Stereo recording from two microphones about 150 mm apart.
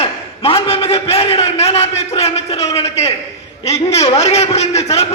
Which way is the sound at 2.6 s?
45° left (ahead or behind).